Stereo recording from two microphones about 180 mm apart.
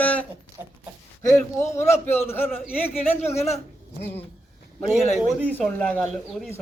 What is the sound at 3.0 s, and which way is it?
Speech, 35° left (ahead or behind).